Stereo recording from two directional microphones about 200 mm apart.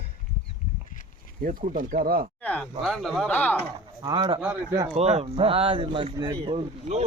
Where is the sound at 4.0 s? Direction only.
20° right (ahead or behind).